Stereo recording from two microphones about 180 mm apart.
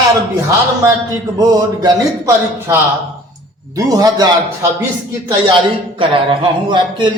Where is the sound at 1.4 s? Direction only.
20° right (ahead or behind).